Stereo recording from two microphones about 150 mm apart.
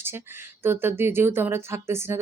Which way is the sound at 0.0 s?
15° right (ahead or behind).